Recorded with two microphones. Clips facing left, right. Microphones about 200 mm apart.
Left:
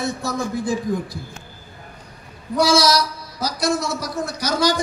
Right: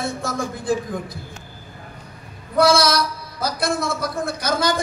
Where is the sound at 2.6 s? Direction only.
55° right (ahead or behind).